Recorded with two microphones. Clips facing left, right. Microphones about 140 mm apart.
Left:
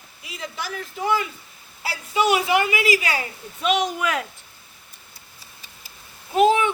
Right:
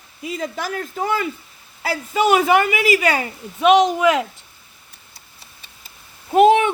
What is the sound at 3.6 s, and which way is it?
Speech, 90° right.